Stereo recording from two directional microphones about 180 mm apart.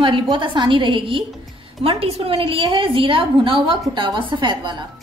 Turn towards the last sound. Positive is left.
turn(degrees=-25)  # may be behind; listen again after turning